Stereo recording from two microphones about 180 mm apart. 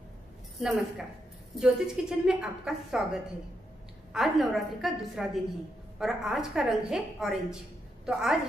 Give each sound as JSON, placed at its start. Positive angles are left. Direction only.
{"t": 0.6, "sound": "a woman's voice", "side_deg": 0}
{"t": 4.1, "sound": "a woman's voice", "side_deg": 0}